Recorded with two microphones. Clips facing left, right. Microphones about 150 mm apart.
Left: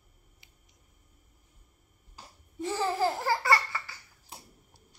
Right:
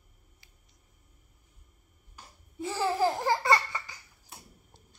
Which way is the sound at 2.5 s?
Centre (ahead or behind).